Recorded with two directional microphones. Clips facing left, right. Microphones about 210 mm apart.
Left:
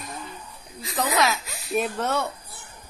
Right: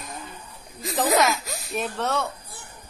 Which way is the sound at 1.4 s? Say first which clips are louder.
Right 5 dB; 40° right (ahead or behind).